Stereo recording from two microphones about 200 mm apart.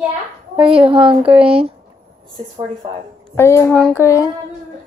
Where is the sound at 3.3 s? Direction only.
10° left (ahead or behind).